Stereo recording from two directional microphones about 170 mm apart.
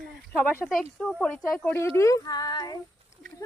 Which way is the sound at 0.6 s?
Centre (ahead or behind).